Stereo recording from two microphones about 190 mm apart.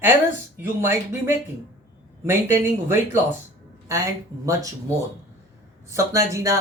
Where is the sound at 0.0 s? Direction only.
10° right (ahead or behind).